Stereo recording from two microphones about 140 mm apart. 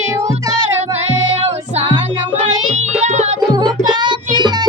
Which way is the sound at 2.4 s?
50° right (ahead or behind).